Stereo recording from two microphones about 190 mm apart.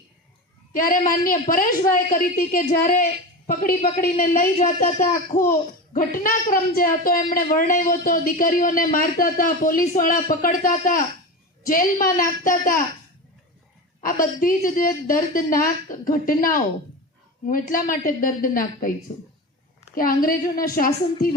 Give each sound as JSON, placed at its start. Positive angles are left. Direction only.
{"t": 0.7, "sound": "a child's voice", "side_deg": 50}
{"t": 14.0, "sound": "a child's voice", "side_deg": 45}
{"t": 20.0, "sound": "a child's voice", "side_deg": 50}